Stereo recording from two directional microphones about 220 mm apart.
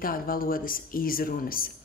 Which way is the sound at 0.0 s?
40° left (ahead or behind).